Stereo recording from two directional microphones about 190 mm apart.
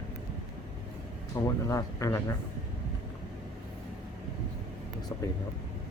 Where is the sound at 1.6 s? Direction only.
15° left (ahead or behind).